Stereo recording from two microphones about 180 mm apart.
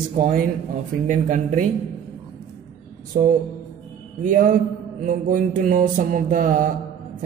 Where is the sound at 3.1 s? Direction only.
40° right (ahead or behind).